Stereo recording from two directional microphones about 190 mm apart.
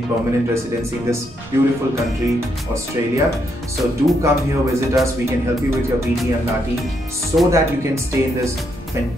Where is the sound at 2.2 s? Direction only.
15° right (ahead or behind).